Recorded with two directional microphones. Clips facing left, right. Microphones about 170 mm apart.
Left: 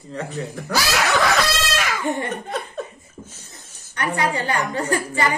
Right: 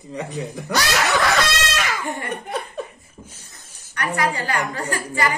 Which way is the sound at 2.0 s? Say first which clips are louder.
Left 4 dB; 25° left (ahead or behind).